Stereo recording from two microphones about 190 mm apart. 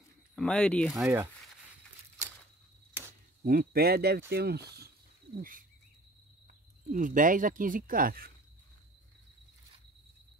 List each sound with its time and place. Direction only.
0.4 s speech: 5° left (ahead or behind)
0.9 s speech: 15° right (ahead or behind)
3.4 s speech: 50° right (ahead or behind)
5.4 s bird: 45° right (ahead or behind)
6.9 s speech: 45° right (ahead or behind)